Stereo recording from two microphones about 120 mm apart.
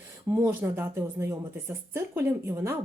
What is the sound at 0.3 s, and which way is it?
A woman's voice, 25° right (ahead or behind).